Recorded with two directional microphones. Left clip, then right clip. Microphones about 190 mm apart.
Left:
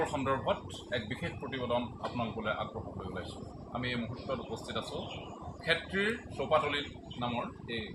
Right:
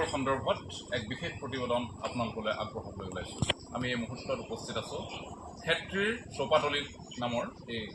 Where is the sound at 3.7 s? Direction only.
10° right (ahead or behind).